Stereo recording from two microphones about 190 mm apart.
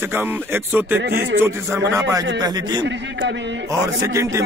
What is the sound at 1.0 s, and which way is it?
Speech, 55° right (ahead or behind).